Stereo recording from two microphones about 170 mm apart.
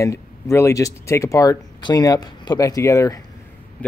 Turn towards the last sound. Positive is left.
turn(degrees=15)  # may be behind; listen again after turning